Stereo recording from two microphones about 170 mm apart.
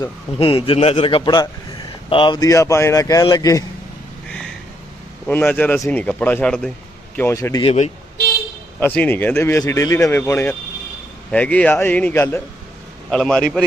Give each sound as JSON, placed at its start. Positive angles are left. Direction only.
{"t": 0.0, "sound": "a man's voice", "side_deg": 30}
{"t": 4.3, "sound": "a sound", "side_deg": 5}
{"t": 5.3, "sound": "speech", "side_deg": 10}
{"t": 7.6, "sound": "a man's voice", "side_deg": 35}
{"t": 8.8, "sound": "speech", "side_deg": 10}
{"t": 13.1, "sound": "a man's voice", "side_deg": 5}